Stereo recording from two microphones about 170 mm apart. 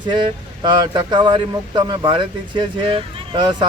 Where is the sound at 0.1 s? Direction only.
25° right (ahead or behind).